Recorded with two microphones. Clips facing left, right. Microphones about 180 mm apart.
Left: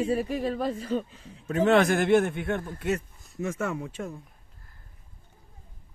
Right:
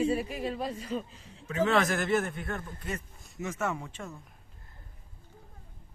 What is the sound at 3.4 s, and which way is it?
Speech, 55° left (ahead or behind).